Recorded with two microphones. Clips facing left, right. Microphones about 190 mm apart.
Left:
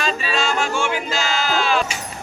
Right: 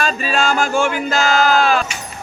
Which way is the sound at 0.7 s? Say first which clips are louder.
Right 5 dB; 55° right (ahead or behind).